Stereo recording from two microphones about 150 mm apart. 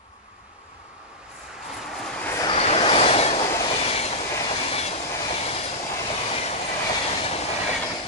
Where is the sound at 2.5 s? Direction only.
40° left (ahead or behind).